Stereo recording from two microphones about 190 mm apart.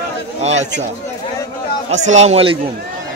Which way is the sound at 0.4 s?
35° right (ahead or behind).